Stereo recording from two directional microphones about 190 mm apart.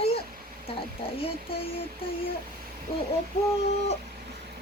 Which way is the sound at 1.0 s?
30° left (ahead or behind).